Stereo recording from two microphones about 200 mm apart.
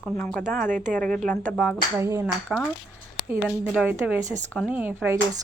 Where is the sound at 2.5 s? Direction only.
5° right (ahead or behind).